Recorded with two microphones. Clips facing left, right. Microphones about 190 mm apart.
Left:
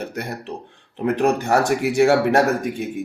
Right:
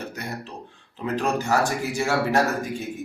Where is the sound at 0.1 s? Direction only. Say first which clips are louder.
Left 5 dB; 60° left (ahead or behind).